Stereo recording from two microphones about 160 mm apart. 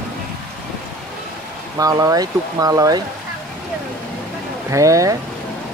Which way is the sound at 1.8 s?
20° right (ahead or behind).